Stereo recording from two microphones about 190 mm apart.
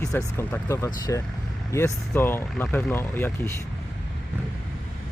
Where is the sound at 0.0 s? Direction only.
15° left (ahead or behind).